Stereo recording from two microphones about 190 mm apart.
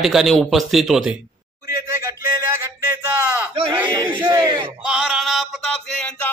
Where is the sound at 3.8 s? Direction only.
25° right (ahead or behind).